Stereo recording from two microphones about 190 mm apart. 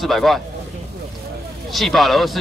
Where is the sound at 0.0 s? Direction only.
Centre (ahead or behind).